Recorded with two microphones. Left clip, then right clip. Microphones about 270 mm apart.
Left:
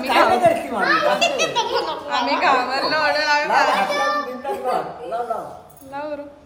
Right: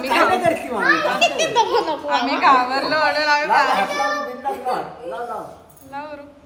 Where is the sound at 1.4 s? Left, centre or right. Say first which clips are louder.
Right 3 dB; right.